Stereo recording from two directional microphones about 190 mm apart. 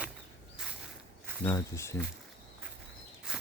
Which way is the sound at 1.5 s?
15° left (ahead or behind).